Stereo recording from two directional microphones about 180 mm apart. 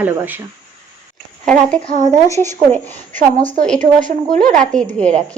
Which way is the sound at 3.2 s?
45° right (ahead or behind).